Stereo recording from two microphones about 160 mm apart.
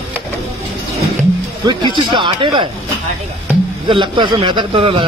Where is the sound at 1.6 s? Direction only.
30° right (ahead or behind).